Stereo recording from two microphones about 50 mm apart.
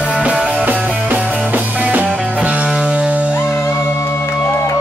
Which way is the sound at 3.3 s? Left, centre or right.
Left.